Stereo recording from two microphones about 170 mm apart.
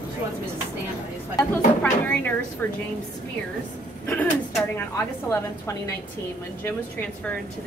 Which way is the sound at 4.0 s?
5° left (ahead or behind).